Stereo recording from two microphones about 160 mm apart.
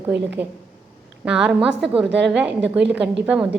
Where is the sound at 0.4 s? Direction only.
10° right (ahead or behind).